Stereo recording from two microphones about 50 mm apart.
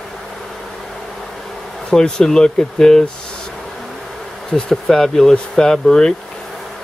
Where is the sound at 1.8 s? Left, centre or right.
Centre.